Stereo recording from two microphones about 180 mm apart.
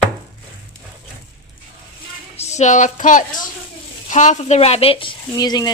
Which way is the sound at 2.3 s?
35° left (ahead or behind).